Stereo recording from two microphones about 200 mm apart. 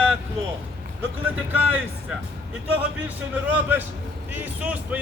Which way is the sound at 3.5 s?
10° right (ahead or behind).